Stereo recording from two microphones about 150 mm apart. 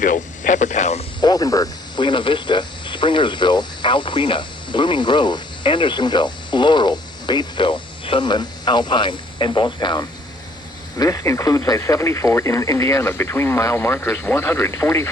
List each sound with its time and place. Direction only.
0.0 s radio: 60° left (ahead or behind)
1.2 s snake: 25° left (ahead or behind)
10.9 s speech: 20° left (ahead or behind)